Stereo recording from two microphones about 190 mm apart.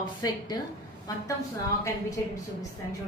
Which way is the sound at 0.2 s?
20° left (ahead or behind).